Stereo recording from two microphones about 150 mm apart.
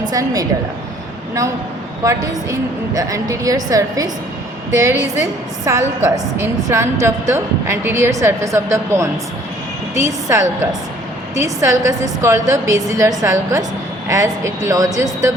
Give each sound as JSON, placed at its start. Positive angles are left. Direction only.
{"t": 0.0, "sound": "a woman's voice", "side_deg": -25}
{"t": 2.0, "sound": "a woman's voice", "side_deg": -20}